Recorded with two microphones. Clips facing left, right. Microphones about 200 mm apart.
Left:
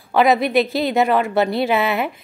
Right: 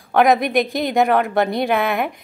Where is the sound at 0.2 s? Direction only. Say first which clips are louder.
Even; centre (ahead or behind).